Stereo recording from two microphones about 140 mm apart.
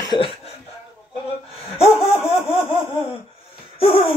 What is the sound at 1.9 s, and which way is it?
Speech, 15° left (ahead or behind).